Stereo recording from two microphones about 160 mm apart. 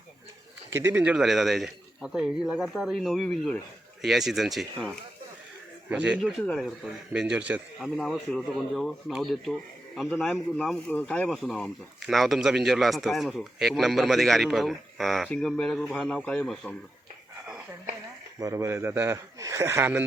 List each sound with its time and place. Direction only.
0.7 s a man's voice: 15° right (ahead or behind); by 16.7 s 10° left (ahead or behind)
18.3 s a man's voice: 20° right (ahead or behind)